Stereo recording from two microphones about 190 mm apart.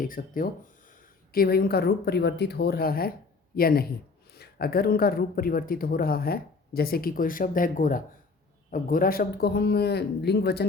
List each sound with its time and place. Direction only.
0.0 s speech: 45° left (ahead or behind)